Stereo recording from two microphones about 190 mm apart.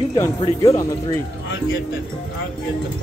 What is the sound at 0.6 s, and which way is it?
Speech, 15° left (ahead or behind).